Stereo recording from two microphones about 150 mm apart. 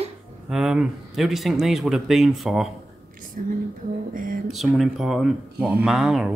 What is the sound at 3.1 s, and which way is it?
Whispering, 65° right (ahead or behind).